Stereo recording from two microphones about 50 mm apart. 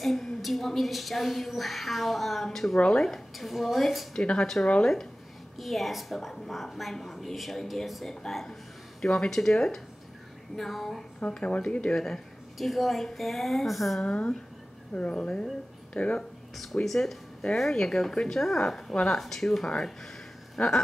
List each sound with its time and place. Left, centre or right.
0.0 s a woman's voice: centre
4.1 s speech: centre
5.6 s a woman's voice: centre
9.0 s speech: centre
11.1 s speech: left
11.9 s speech: centre
12.5 s a woman's voice: centre
14.0 s speech: left
16.8 s a woman's voice: centre
20.5 s a sound: centre